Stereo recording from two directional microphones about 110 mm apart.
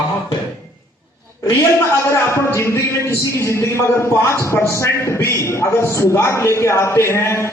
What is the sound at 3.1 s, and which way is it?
A man's voice, 25° left (ahead or behind).